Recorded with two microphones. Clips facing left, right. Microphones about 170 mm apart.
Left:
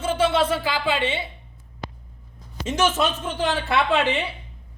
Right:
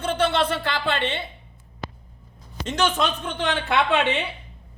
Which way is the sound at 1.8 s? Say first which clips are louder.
Right 1 dB; 15° left (ahead or behind).